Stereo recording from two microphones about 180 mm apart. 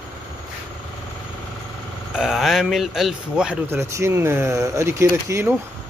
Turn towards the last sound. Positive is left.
turn(degrees=-15)  # may be behind; listen again after turning